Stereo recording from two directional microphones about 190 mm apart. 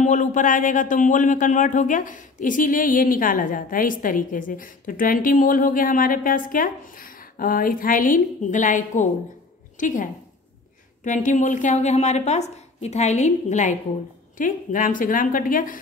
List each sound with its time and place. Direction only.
0.0 s a woman's voice: 40° left (ahead or behind)
11.1 s a woman's voice: 40° left (ahead or behind)